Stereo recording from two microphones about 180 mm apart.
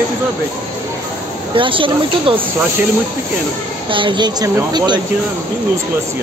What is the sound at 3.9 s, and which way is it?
Speech, 25° right (ahead or behind).